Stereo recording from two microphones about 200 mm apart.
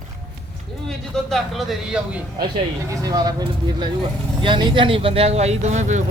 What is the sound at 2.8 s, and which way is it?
Speech, 15° right (ahead or behind).